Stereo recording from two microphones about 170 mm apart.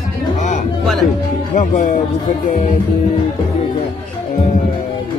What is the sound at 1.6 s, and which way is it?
Speech, 50° left (ahead or behind).